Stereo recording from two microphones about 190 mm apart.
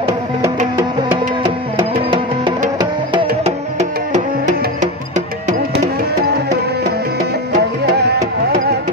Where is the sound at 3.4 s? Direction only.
35° right (ahead or behind).